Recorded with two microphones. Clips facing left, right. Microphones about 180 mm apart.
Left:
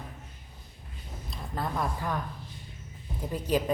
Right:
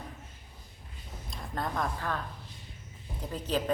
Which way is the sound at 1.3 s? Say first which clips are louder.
Left 1 dB; 5° left (ahead or behind).